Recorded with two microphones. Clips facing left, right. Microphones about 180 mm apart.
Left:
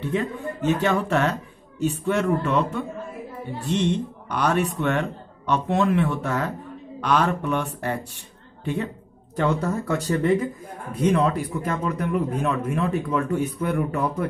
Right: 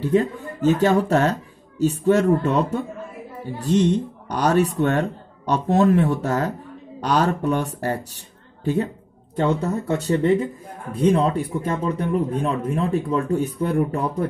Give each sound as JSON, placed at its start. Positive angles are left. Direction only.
{"t": 0.0, "sound": "speech", "side_deg": -40}
{"t": 9.4, "sound": "speech", "side_deg": -25}